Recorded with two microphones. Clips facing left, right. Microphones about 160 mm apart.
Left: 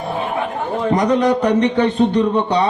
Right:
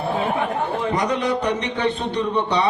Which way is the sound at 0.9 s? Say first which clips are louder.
Left 9 dB; 45° left (ahead or behind).